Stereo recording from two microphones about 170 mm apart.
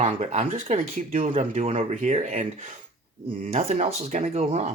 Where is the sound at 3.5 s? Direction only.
40° right (ahead or behind).